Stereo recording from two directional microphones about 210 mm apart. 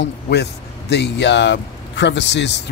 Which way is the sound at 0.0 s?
55° left (ahead or behind).